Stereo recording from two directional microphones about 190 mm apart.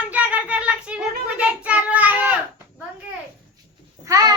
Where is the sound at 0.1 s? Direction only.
10° right (ahead or behind).